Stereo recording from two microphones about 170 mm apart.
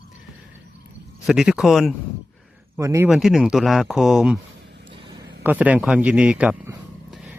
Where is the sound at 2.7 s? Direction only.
15° right (ahead or behind).